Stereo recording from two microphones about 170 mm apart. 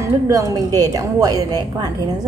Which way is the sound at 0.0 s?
20° right (ahead or behind).